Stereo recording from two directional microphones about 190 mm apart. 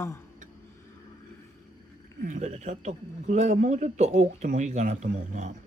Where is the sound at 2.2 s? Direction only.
40° right (ahead or behind).